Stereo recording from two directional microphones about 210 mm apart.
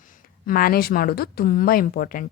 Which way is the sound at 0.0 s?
40° left (ahead or behind).